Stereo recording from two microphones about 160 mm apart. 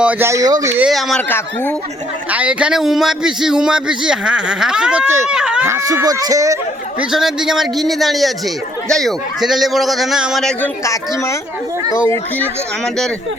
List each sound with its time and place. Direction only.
0.0 s speech: 10° right (ahead or behind)
0.8 s a man's voice: centre (ahead or behind)
2.3 s a man's voice: 10° right (ahead or behind)
5.6 s speech: 15° right (ahead or behind)
7.0 s a man's voice: centre (ahead or behind)
10.6 s speech: 20° left (ahead or behind)